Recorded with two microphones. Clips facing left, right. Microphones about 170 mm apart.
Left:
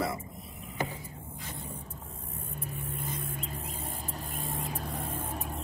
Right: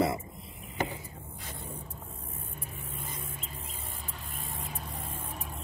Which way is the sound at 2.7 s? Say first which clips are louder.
Left 6 dB; 45° left (ahead or behind).